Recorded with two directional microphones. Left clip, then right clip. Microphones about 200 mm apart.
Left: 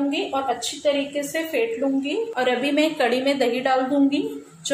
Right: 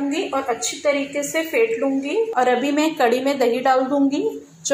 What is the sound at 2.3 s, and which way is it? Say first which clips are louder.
A woman's voice: right 2 dB; 5° right (ahead or behind).